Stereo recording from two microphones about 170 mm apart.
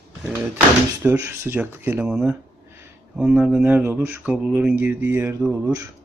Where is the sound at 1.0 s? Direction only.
15° right (ahead or behind).